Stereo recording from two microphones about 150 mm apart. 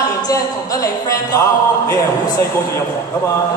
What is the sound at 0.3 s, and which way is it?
Speech, 20° left (ahead or behind).